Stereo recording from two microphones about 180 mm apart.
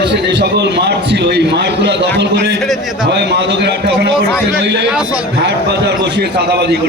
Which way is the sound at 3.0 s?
75° right (ahead or behind).